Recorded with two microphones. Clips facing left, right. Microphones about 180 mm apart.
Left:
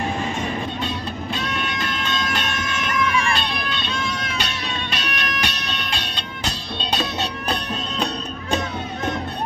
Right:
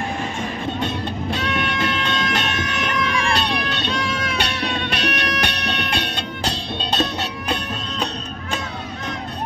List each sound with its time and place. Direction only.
1.4 s music: 70° right (ahead or behind)